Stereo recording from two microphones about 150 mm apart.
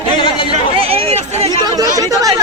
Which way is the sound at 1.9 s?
25° right (ahead or behind).